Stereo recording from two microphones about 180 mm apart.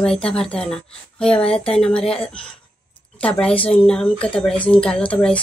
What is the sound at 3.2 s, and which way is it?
Speech, 5° left (ahead or behind).